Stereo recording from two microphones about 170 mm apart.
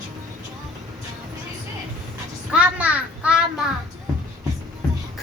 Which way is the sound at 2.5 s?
10° right (ahead or behind).